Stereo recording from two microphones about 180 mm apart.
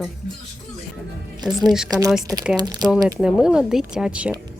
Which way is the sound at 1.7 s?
5° right (ahead or behind).